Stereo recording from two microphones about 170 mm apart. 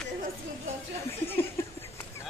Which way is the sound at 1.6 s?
15° left (ahead or behind).